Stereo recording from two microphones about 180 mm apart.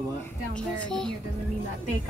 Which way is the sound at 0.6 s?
5° left (ahead or behind).